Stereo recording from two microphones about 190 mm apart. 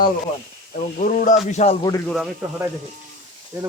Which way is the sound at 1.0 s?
45° left (ahead or behind).